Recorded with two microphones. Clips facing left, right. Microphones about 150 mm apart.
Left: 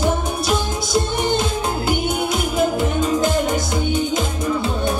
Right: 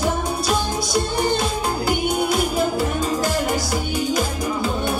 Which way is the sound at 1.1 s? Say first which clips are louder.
Left 1 dB; 20° left (ahead or behind).